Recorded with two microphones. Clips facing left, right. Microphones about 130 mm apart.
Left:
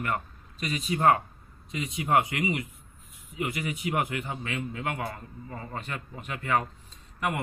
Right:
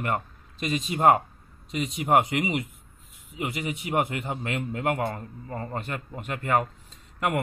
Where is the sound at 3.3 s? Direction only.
30° right (ahead or behind).